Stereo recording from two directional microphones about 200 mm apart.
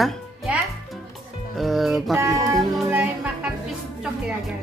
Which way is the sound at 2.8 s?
5° right (ahead or behind).